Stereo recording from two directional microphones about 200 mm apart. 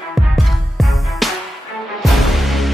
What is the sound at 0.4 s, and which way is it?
Music, centre (ahead or behind).